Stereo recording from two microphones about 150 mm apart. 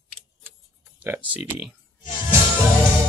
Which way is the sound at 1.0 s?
10° right (ahead or behind).